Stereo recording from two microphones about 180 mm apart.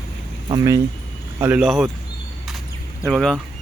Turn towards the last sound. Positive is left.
turn(degrees=0)  # may be behind; listen again after turning